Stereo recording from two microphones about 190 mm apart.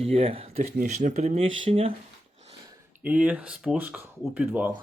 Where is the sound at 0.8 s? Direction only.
40° right (ahead or behind).